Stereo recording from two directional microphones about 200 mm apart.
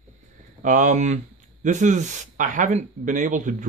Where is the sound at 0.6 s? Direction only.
40° right (ahead or behind).